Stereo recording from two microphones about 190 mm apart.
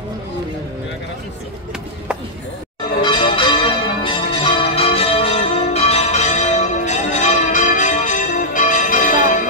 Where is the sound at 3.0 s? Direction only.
25° left (ahead or behind).